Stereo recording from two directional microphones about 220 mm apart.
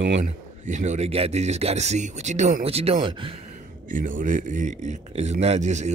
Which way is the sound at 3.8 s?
35° right (ahead or behind).